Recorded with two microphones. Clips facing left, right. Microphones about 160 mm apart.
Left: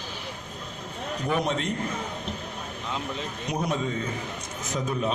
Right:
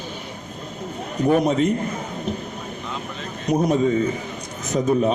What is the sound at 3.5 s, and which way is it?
Speech, 45° right (ahead or behind).